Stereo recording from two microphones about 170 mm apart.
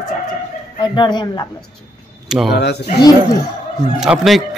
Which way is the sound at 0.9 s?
25° left (ahead or behind).